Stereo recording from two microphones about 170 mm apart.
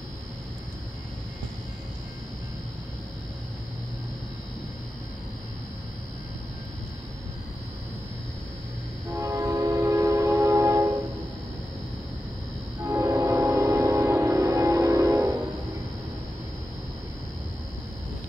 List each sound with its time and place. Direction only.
9.1 s train: 15° right (ahead or behind)
12.8 s music: 10° right (ahead or behind)